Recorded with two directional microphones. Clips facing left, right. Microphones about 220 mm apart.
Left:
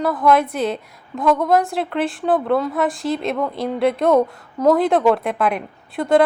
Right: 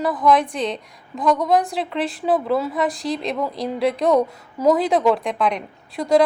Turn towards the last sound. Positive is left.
turn(degrees=5)  # may be behind; listen again after turning